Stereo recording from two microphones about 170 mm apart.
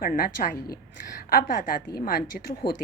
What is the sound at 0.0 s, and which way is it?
A woman's voice, 55° left (ahead or behind).